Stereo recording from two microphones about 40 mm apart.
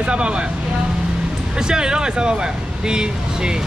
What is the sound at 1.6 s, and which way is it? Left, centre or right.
Speech, centre.